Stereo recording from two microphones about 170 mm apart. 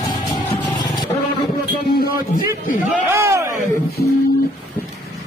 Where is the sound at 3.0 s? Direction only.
15° right (ahead or behind).